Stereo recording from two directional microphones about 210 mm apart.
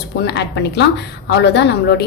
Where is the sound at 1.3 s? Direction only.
55° left (ahead or behind).